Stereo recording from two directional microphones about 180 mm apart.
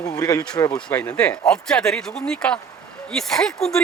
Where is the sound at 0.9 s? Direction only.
10° left (ahead or behind).